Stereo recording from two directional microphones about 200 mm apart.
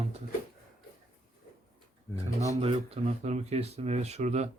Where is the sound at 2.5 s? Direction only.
30° right (ahead or behind).